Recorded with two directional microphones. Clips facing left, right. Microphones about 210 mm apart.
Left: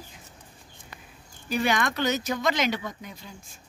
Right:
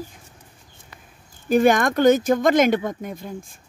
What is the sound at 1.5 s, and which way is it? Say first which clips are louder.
Speech: right 9 dB; 50° right (ahead or behind).